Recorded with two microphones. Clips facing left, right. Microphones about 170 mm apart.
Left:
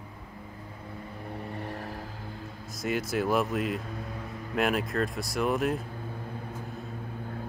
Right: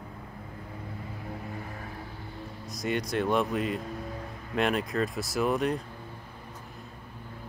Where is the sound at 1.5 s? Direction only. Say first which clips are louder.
Left 3 dB; 80° left.